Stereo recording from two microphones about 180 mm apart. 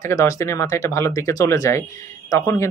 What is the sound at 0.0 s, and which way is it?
Speech, 20° left (ahead or behind).